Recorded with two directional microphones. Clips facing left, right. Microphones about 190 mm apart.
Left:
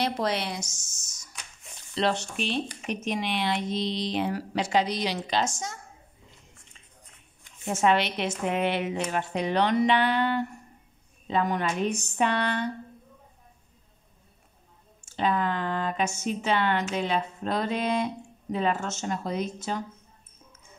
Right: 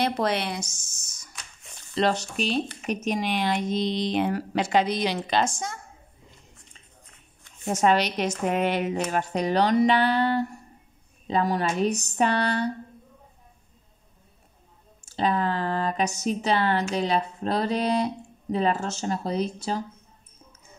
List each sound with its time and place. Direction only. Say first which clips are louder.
0.0 s speech: right 3 dB; 55° right (ahead or behind)
2.0 s speech: right 3 dB; 40° right (ahead or behind)
7.6 s speech: right 2 dB; 40° right (ahead or behind)
15.0 s speech: right 2 dB; 35° right (ahead or behind)